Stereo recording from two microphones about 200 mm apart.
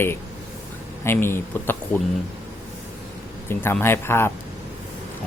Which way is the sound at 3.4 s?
10° left (ahead or behind).